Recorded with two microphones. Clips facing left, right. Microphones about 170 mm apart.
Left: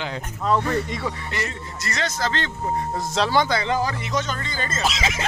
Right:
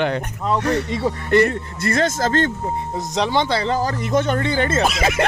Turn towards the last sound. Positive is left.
turn(degrees=-60)  # may be behind; listen again after turning